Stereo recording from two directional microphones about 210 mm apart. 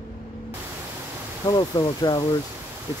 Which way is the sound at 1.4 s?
20° left (ahead or behind).